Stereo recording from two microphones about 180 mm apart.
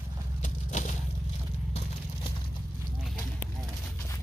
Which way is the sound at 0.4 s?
45° left (ahead or behind).